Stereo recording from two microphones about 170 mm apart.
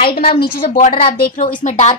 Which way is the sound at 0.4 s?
55° left (ahead or behind).